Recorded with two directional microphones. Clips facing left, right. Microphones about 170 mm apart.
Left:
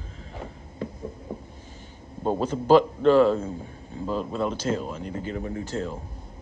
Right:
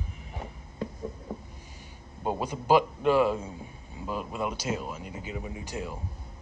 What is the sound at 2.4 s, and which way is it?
Speech, 10° right (ahead or behind).